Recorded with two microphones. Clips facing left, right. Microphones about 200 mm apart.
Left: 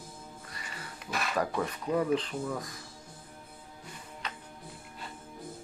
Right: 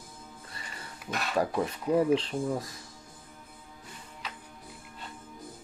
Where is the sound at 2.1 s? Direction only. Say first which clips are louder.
Right 3 dB; 30° right (ahead or behind).